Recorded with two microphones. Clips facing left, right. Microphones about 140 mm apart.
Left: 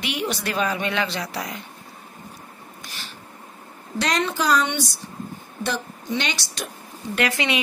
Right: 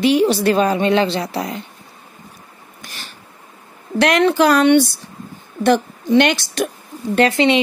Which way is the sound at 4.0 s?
65° right (ahead or behind).